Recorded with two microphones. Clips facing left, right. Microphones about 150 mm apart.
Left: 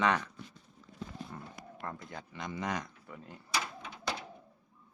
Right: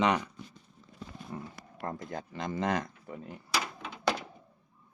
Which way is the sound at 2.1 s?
45° right (ahead or behind).